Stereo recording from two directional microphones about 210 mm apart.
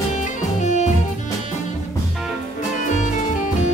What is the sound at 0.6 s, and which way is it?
Music, 35° left (ahead or behind).